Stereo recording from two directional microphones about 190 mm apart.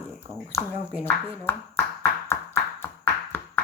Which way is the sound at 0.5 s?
15° left (ahead or behind).